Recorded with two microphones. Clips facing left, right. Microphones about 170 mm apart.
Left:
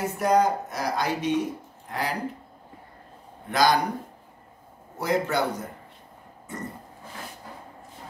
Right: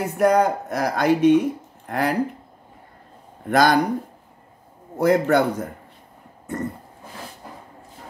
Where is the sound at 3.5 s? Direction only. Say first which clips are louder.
Right 4 dB; 55° right (ahead or behind).